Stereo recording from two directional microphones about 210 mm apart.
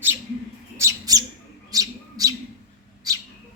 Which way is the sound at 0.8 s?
15° right (ahead or behind).